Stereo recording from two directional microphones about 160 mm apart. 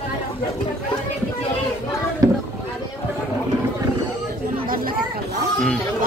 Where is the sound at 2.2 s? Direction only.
20° right (ahead or behind).